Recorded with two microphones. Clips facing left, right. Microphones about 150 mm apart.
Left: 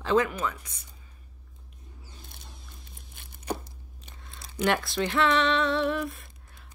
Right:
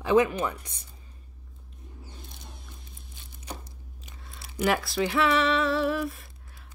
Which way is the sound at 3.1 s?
60° left (ahead or behind).